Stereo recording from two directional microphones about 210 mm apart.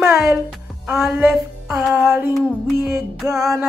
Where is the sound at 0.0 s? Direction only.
15° right (ahead or behind).